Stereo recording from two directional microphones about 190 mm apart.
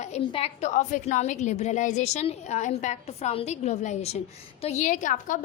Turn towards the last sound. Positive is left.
turn(degrees=40)  # may be behind; listen again after turning